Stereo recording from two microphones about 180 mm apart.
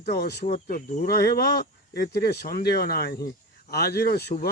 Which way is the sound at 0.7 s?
50° left (ahead or behind).